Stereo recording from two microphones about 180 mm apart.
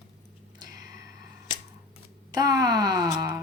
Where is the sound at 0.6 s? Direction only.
20° right (ahead or behind).